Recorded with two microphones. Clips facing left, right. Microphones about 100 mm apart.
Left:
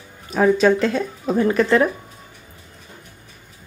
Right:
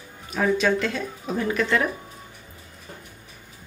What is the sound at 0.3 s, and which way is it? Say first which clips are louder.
Speech: left 6 dB; 40° left (ahead or behind).